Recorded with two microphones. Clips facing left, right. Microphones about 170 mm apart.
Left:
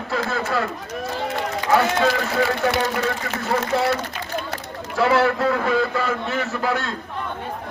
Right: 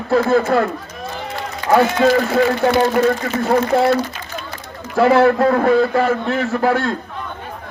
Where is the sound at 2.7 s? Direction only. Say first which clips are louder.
Right 8 dB; 35° right (ahead or behind).